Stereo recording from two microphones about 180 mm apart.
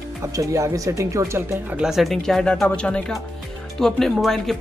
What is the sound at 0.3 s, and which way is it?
Speech, 15° right (ahead or behind).